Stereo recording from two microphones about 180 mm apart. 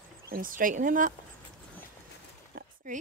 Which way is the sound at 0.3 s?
50° right (ahead or behind).